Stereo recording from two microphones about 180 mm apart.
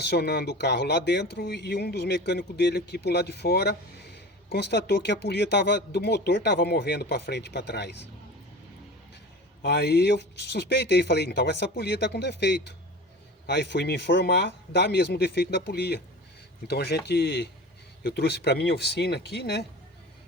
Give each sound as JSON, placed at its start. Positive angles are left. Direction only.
{"t": 0.0, "sound": "speech", "side_deg": 65}
{"t": 9.6, "sound": "speech", "side_deg": 70}